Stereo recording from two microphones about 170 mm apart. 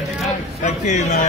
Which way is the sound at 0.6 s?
45° left (ahead or behind).